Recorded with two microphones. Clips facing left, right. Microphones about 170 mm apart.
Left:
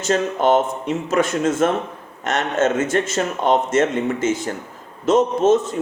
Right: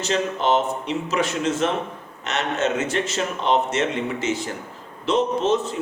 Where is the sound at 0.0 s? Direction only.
50° left (ahead or behind).